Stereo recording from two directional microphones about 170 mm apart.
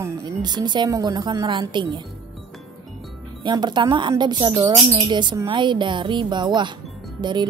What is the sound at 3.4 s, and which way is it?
Speech, 25° right (ahead or behind).